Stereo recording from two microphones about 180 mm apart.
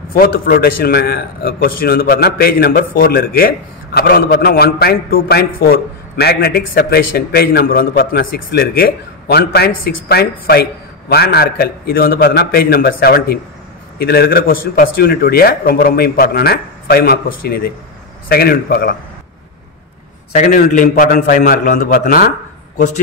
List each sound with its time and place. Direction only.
0.1 s a man's voice: 55° left (ahead or behind)
20.3 s a man's voice: 45° left (ahead or behind)